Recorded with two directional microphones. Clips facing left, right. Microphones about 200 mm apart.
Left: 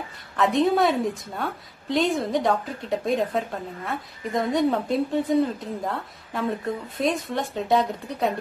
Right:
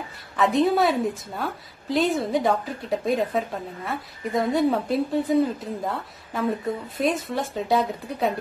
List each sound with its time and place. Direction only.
0.4 s a woman's voice: centre (ahead or behind)